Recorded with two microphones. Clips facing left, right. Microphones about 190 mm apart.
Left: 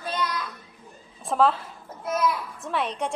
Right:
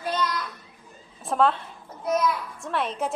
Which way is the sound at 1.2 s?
Centre (ahead or behind).